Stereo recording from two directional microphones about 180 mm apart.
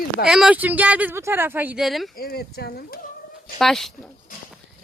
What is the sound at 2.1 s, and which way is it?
Speech, 60° left (ahead or behind).